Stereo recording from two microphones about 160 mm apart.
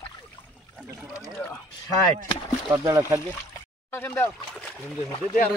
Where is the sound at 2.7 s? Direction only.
20° right (ahead or behind).